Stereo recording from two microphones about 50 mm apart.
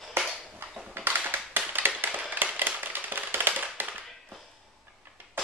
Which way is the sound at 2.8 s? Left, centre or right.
Right.